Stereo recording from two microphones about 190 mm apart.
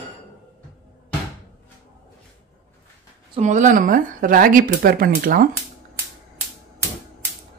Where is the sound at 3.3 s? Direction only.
40° right (ahead or behind).